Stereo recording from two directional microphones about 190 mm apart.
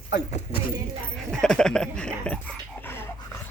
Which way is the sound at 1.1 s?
5° left (ahead or behind).